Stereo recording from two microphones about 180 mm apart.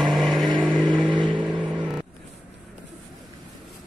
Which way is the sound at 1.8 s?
5° right (ahead or behind).